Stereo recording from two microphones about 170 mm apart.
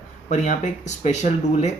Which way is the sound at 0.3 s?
45° left (ahead or behind).